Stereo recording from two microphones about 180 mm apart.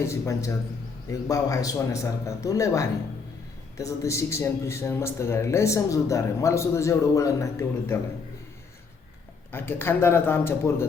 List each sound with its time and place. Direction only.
0.0 s a man's voice: 15° left (ahead or behind)
9.5 s a man's voice: 10° left (ahead or behind)